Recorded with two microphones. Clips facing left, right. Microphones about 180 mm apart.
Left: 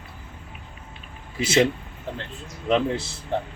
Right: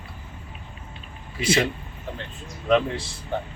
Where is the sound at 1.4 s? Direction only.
25° left (ahead or behind).